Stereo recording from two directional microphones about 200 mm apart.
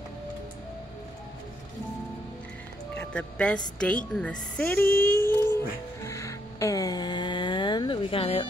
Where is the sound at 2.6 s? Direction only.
5° left (ahead or behind).